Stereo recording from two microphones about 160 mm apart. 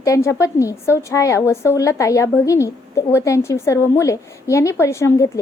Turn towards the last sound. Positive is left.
turn(degrees=15)  # may be behind; listen again after turning